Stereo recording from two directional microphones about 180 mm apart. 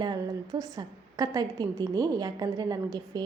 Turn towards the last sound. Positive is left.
turn(degrees=-20)  # may be behind; listen again after turning